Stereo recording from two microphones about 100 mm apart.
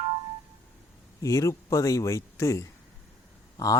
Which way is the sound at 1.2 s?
30° left (ahead or behind).